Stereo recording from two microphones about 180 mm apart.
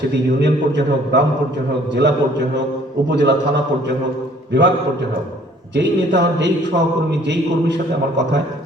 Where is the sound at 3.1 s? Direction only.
75° right (ahead or behind).